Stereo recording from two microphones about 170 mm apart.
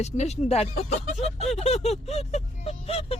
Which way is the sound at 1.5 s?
40° left (ahead or behind).